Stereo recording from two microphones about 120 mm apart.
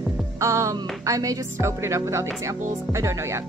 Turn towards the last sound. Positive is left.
turn(degrees=-25)  # may be behind; listen again after turning